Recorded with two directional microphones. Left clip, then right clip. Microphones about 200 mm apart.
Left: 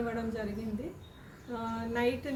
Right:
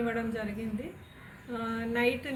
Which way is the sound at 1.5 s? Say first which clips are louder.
Right 2 dB; centre (ahead or behind).